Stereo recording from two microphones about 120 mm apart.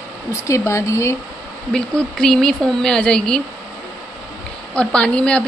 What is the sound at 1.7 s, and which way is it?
Speech, 5° left (ahead or behind).